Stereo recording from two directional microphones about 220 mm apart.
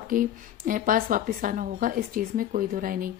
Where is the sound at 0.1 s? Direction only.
40° right (ahead or behind).